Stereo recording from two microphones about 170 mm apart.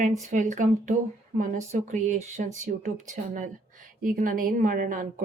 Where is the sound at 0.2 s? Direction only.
45° right (ahead or behind).